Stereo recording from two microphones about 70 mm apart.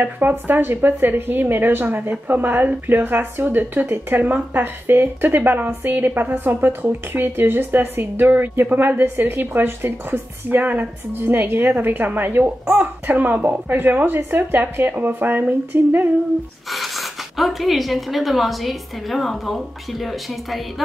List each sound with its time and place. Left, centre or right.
0.0 s a woman's voice: right
16.6 s speech: centre